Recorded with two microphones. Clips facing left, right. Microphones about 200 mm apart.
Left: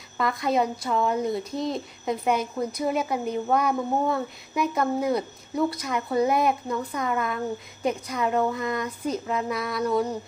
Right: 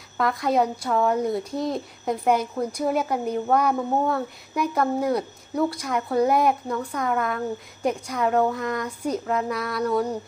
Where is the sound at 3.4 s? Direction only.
5° left (ahead or behind).